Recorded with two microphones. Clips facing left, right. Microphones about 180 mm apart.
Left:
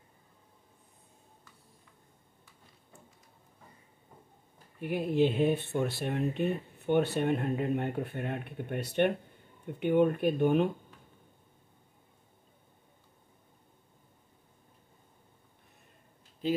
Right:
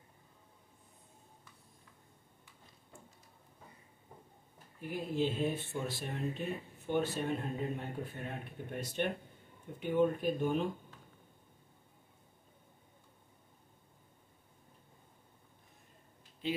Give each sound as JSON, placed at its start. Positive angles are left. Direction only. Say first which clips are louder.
{"t": 4.7, "sound": "speech", "louder": "left 7 dB", "side_deg": 65}
{"t": 16.4, "sound": "speech", "louder": "left 6 dB", "side_deg": 40}